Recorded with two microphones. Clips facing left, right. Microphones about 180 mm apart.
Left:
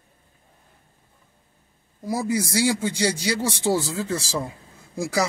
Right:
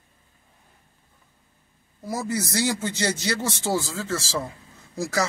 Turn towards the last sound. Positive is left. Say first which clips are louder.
# left 2 dB
turn(degrees=15)  # may be behind; listen again after turning